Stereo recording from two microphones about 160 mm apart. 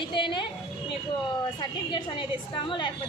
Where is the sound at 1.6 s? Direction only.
30° left (ahead or behind).